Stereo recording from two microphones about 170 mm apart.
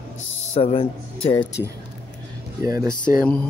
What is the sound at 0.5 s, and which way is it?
Speech, 35° left (ahead or behind).